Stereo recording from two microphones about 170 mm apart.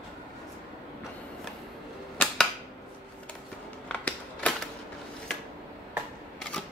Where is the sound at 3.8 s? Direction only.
5° left (ahead or behind).